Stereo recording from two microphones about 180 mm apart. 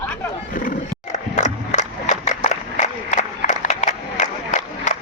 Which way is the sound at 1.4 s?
40° left (ahead or behind).